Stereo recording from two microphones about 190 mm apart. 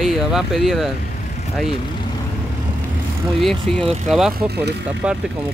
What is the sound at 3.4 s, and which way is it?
Speech, centre (ahead or behind).